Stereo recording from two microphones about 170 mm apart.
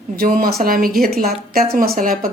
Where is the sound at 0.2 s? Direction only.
55° right (ahead or behind).